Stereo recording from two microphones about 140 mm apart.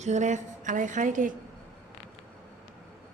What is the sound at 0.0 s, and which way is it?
A woman's voice, 60° right (ahead or behind).